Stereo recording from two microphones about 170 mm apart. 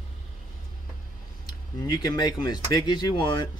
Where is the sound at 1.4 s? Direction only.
25° left (ahead or behind).